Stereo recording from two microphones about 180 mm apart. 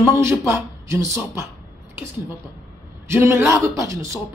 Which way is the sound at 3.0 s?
15° right (ahead or behind).